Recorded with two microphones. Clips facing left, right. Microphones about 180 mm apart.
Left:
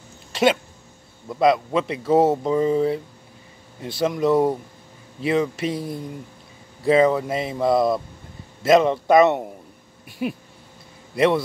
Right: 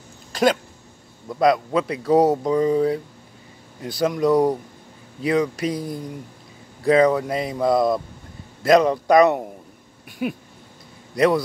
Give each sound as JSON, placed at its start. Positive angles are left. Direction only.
{"t": 0.3, "sound": "a sound", "side_deg": 5}
{"t": 1.3, "sound": "speech", "side_deg": 0}
{"t": 2.6, "sound": "speech", "side_deg": 25}
{"t": 4.0, "sound": "speech", "side_deg": 0}
{"t": 5.6, "sound": "speech", "side_deg": 0}
{"t": 10.0, "sound": "a sound", "side_deg": 0}
{"t": 11.1, "sound": "speech", "side_deg": 0}